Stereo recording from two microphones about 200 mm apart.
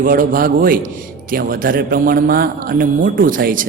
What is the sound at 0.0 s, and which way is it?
Speech, 45° right (ahead or behind).